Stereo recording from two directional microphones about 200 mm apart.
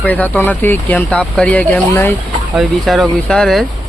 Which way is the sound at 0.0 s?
10° left (ahead or behind).